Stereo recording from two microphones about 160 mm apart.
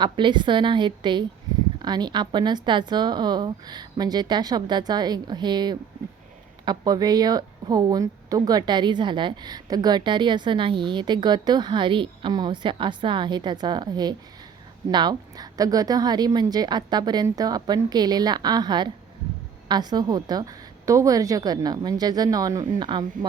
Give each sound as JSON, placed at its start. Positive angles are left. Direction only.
{"t": 0.0, "sound": "a woman's voice", "side_deg": -30}